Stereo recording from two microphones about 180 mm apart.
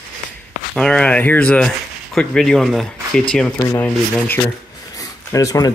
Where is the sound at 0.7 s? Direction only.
5° left (ahead or behind).